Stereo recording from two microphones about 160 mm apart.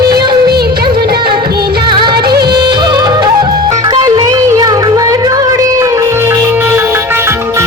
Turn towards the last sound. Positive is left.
turn(degrees=-15)  # may be behind; listen again after turning